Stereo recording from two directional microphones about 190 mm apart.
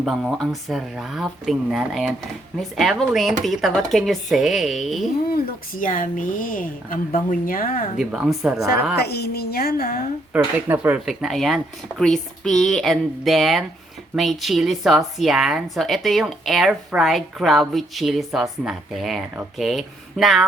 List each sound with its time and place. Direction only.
0.0 s a woman's voice: centre (ahead or behind)
5.3 s speech: 45° left (ahead or behind)
7.9 s a woman's voice: centre (ahead or behind)
9.0 s a woman's voice: 60° left (ahead or behind)
10.3 s a woman's voice: 10° right (ahead or behind)